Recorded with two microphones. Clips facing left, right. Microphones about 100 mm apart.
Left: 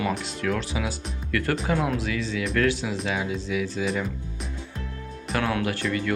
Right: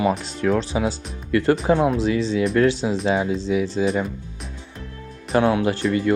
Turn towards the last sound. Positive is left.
turn(degrees=-25)  # may be behind; listen again after turning